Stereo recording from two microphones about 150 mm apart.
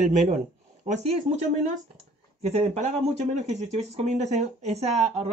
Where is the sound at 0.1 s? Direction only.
55° right (ahead or behind).